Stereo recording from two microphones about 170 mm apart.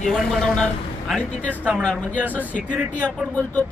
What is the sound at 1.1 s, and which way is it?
Speech, 5° left (ahead or behind).